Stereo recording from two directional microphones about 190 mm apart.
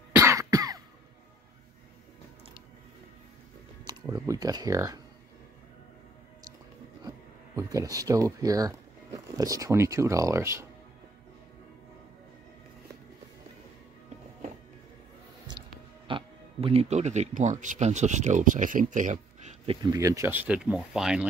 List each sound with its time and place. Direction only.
0.1 s cough: 15° right (ahead or behind)
4.1 s speech: 20° right (ahead or behind)
7.5 s speech: 15° right (ahead or behind)
16.1 s speech: 25° right (ahead or behind); by 21.3 s 5° right (ahead or behind)